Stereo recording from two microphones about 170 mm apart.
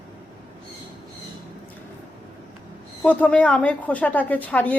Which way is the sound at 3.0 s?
10° left (ahead or behind).